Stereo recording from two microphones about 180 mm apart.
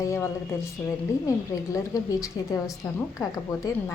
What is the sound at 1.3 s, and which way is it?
A woman's voice, 20° left (ahead or behind).